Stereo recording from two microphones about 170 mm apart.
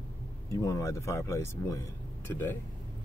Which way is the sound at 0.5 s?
20° left (ahead or behind).